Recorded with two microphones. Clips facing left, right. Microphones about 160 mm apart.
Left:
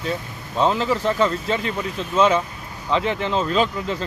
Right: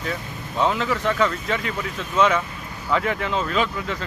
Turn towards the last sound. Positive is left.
turn(degrees=30)  # may be behind; listen again after turning